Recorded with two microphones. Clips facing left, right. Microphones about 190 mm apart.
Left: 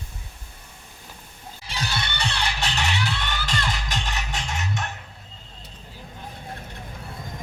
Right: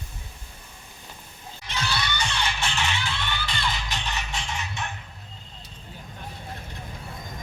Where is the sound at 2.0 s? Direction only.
60° left (ahead or behind).